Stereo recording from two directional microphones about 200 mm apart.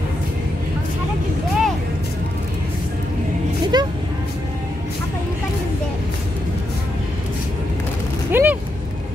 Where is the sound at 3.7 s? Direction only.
20° right (ahead or behind).